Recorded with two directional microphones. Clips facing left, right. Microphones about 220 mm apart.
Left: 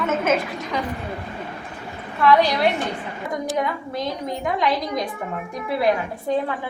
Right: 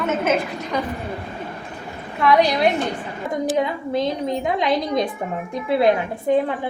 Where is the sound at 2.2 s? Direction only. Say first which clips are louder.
Even; 15° right (ahead or behind).